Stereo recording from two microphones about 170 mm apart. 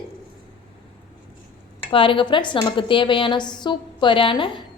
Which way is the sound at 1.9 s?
30° left (ahead or behind).